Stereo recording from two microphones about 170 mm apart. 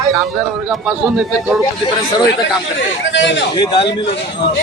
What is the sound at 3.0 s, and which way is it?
Speech, 90° left.